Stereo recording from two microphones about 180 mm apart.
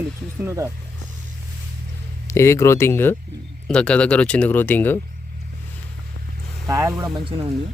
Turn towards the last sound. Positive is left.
turn(degrees=-30)  # may be behind; listen again after turning